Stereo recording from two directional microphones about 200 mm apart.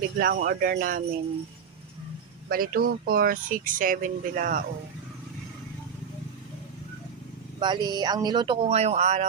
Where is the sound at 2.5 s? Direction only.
45° right (ahead or behind).